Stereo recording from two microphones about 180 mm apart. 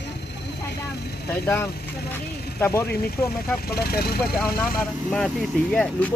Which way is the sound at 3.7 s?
60° left (ahead or behind).